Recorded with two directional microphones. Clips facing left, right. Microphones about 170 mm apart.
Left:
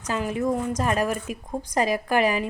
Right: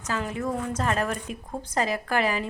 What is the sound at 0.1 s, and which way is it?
A woman's voice, 15° left (ahead or behind).